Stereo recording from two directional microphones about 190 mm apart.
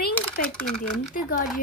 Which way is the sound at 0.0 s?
50° left (ahead or behind).